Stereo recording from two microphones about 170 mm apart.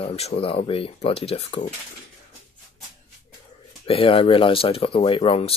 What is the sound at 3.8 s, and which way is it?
Speech, 35° left (ahead or behind).